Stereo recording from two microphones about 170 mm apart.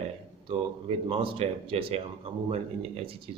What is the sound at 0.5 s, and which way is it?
Speech, 35° right (ahead or behind).